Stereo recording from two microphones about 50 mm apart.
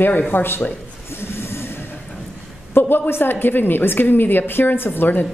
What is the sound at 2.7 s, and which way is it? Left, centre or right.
A woman's voice, left.